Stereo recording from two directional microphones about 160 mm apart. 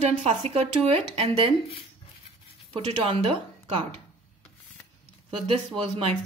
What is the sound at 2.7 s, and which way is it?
Speech, 35° right (ahead or behind).